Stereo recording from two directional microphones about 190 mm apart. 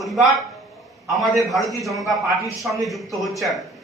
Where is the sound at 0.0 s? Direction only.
Centre (ahead or behind).